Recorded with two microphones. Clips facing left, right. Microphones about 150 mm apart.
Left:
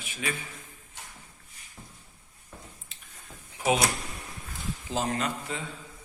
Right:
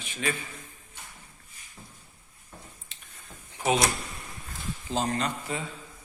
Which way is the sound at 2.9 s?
Centre (ahead or behind).